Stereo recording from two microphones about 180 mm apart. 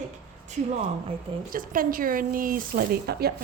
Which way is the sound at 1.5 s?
50° right (ahead or behind).